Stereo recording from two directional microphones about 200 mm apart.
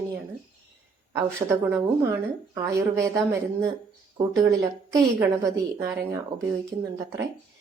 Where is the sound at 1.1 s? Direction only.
15° right (ahead or behind).